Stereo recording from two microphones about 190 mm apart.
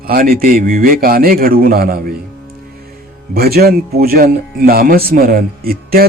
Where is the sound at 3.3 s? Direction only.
55° right (ahead or behind).